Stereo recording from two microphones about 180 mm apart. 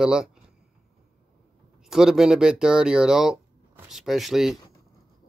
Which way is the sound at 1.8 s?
5° right (ahead or behind).